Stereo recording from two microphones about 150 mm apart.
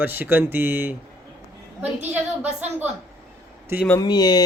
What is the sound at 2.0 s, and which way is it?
Speech, 10° right (ahead or behind).